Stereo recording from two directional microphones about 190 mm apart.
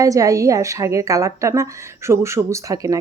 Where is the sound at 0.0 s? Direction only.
15° right (ahead or behind).